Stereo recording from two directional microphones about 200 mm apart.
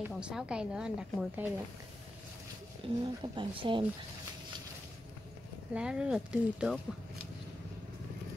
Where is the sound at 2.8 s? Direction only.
25° right (ahead or behind).